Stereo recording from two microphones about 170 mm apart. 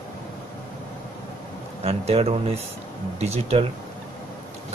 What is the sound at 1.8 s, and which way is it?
A man's voice, 35° right (ahead or behind).